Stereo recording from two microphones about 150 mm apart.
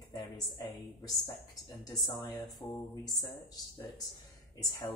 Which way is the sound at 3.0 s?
20° left (ahead or behind).